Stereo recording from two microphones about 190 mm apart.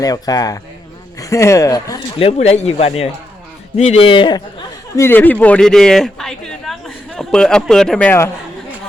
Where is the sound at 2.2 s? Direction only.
35° left (ahead or behind).